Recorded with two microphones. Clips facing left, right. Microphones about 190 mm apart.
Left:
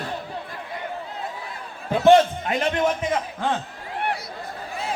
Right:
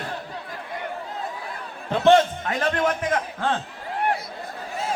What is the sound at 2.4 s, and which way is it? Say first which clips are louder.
A man's voice: left 1 dB; 25° left (ahead or behind).